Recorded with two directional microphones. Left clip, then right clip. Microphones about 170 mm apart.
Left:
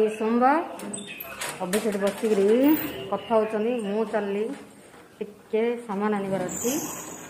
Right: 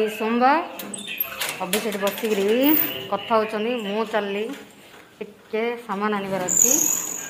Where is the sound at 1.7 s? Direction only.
15° left (ahead or behind).